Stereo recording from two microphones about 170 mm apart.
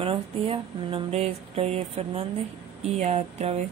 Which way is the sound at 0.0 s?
30° right (ahead or behind).